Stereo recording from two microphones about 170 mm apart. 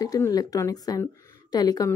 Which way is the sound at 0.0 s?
20° left (ahead or behind).